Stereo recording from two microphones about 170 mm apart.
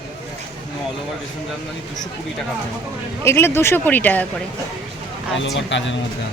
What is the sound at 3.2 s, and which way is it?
A woman's voice, 15° left (ahead or behind).